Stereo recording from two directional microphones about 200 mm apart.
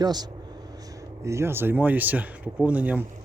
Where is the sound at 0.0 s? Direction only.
20° right (ahead or behind).